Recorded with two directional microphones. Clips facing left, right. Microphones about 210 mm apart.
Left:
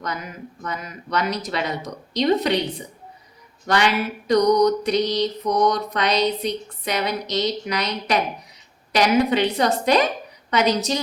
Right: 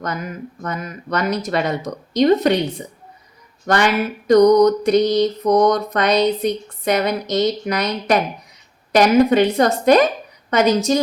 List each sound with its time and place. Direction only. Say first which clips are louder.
0.0 s mantra: right 4 dB; 50° right (ahead or behind)